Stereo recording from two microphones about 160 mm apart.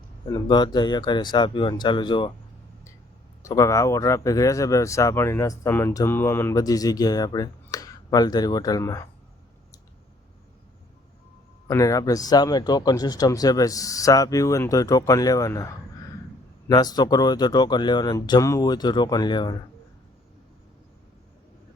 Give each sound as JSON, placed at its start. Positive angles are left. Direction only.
{"t": 0.3, "sound": "speech", "side_deg": 25}
{"t": 3.4, "sound": "speech", "side_deg": 20}
{"t": 11.7, "sound": "speech", "side_deg": 20}